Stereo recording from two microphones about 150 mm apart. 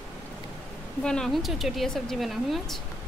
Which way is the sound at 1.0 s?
5° left (ahead or behind).